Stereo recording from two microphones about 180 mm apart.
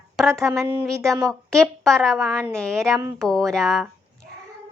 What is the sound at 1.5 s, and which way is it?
A woman's voice, 5° left (ahead or behind).